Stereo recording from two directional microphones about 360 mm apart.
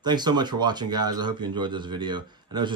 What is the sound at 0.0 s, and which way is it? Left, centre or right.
Speech, centre.